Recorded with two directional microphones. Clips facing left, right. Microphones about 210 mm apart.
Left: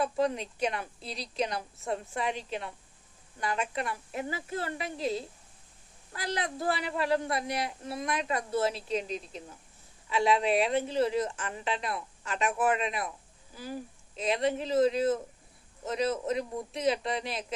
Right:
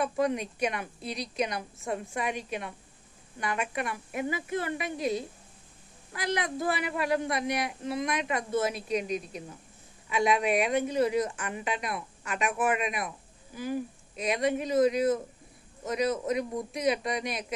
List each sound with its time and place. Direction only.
0.0 s a woman's voice: 15° right (ahead or behind)
1.0 s a woman's voice: 30° left (ahead or behind)
1.4 s a woman's voice: 15° right (ahead or behind)